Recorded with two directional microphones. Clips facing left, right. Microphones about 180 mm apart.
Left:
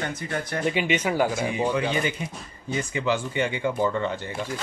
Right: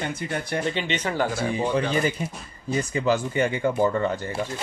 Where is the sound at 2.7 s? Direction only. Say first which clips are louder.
Right 3 dB; 40° right (ahead or behind).